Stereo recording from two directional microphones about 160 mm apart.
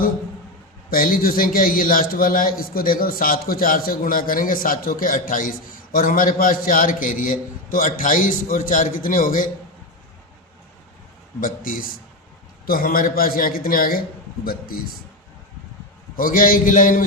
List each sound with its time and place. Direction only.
0.9 s a man's voice: 65° left (ahead or behind)
11.3 s a man's voice: 60° left (ahead or behind)
16.1 s a man's voice: 60° left (ahead or behind)